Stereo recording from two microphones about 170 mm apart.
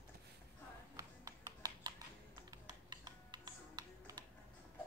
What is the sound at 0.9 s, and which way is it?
Typing, 20° right (ahead or behind).